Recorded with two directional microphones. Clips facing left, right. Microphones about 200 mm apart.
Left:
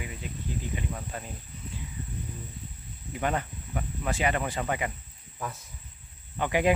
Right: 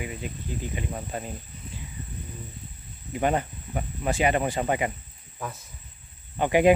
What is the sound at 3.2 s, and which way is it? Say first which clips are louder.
Speech: right 5 dB; 20° right (ahead or behind).